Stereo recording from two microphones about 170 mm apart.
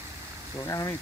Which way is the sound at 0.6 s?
20° left (ahead or behind).